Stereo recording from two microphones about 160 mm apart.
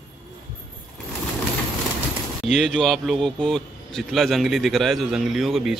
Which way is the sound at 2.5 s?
Centre (ahead or behind).